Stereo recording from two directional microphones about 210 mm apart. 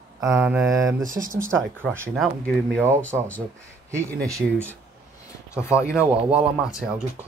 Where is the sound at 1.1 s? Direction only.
40° right (ahead or behind).